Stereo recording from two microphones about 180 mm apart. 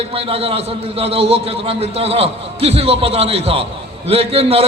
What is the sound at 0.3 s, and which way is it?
A man's voice, 30° right (ahead or behind).